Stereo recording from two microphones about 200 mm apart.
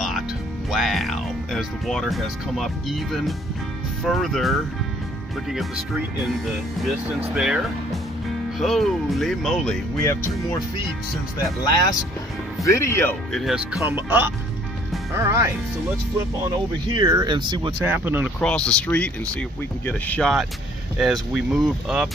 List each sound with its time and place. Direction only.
0.7 s speech: centre (ahead or behind)
7.3 s speech: centre (ahead or behind)
9.9 s speech: 15° left (ahead or behind)
12.6 s speech: 15° left (ahead or behind)
13.3 s speech: centre (ahead or behind)
13.7 s speech: 10° right (ahead or behind)
16.9 s speech: 15° right (ahead or behind)
17.8 s speech: 10° right (ahead or behind)
18.4 s speech: 5° left (ahead or behind)